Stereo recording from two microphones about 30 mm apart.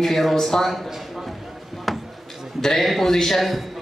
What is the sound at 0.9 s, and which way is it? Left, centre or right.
Clip-clop, centre.